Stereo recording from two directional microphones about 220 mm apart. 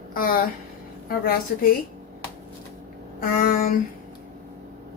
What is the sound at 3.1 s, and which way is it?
Speech, 40° left (ahead or behind).